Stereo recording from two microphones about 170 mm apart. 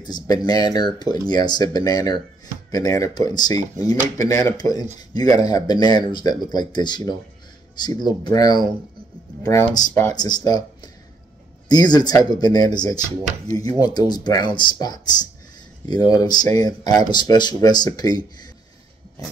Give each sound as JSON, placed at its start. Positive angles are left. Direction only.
{"t": 0.0, "sound": "speech", "side_deg": 25}